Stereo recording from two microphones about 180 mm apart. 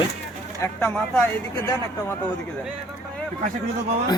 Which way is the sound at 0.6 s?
10° left (ahead or behind).